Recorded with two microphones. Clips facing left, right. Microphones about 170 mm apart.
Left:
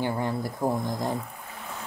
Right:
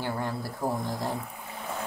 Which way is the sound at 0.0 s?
15° left (ahead or behind).